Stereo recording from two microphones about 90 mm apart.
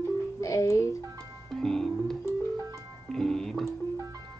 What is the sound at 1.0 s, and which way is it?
Music, 40° right (ahead or behind).